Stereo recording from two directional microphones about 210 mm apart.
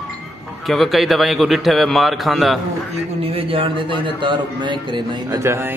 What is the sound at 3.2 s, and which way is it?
Speech, 25° right (ahead or behind).